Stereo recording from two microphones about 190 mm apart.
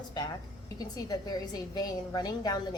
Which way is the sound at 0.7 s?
20° left (ahead or behind).